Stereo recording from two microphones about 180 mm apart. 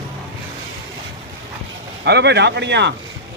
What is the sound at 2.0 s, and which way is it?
Speech, 70° right (ahead or behind).